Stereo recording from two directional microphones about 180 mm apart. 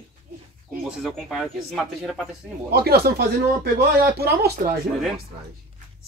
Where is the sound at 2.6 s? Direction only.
60° right (ahead or behind).